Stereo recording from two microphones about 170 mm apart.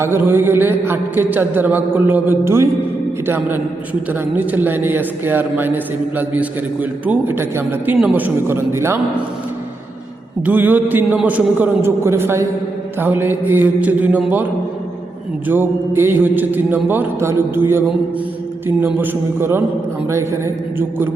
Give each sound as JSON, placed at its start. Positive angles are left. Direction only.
{"t": 0.0, "sound": "a man's voice", "side_deg": -15}
{"t": 10.4, "sound": "a man's voice", "side_deg": -10}
{"t": 15.4, "sound": "a man's voice", "side_deg": -10}